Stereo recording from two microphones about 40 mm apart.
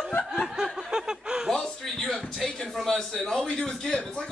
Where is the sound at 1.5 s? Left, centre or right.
Centre.